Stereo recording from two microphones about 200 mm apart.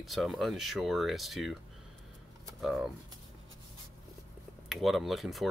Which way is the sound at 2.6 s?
Centre (ahead or behind).